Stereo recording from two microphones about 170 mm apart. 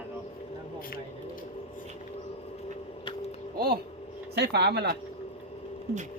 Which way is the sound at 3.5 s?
65° right (ahead or behind).